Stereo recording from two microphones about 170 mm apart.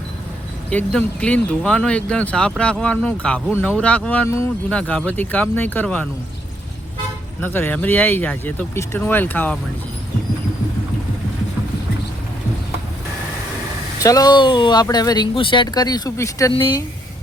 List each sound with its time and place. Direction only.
0.7 s speech: 5° left (ahead or behind)
7.4 s speech: 10° left (ahead or behind)
14.0 s speech: 20° left (ahead or behind)
16.5 s speech: 30° left (ahead or behind)